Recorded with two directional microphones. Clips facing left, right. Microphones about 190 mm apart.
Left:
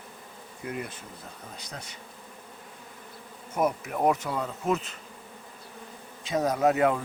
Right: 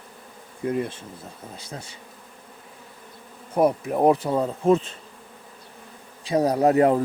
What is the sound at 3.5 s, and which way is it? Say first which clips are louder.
Speech: right 7 dB; 35° right (ahead or behind).